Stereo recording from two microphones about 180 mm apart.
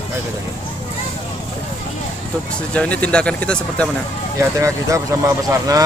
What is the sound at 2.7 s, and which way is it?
Speech, 5° left (ahead or behind).